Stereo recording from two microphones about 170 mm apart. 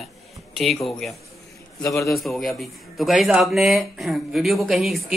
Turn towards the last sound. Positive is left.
turn(degrees=0)  # may be behind; listen again after turning